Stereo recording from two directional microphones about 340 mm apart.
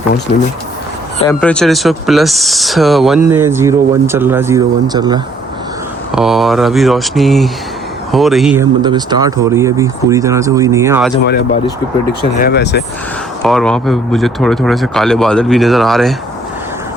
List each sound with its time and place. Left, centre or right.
1.2 s speech: centre
6.1 s speech: centre
8.8 s speech: centre
12.2 s speech: left
13.4 s speech: centre